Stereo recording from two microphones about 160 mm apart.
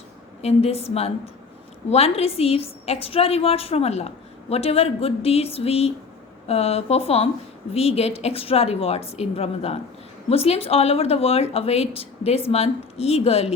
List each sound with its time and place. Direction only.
0.4 s a woman's voice: 40° left (ahead or behind)